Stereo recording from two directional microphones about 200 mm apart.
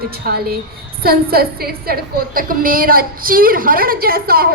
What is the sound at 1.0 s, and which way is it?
A woman's voice, 50° right (ahead or behind).